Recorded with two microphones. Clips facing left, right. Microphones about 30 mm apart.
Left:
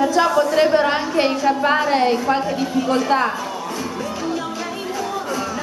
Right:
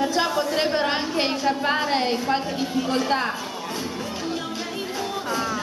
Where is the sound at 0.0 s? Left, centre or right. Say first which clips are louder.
Left 6 dB; right.